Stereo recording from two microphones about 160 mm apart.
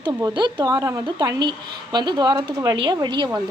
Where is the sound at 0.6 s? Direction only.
20° right (ahead or behind).